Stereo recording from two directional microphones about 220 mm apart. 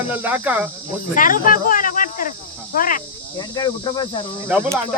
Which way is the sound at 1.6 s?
40° left (ahead or behind).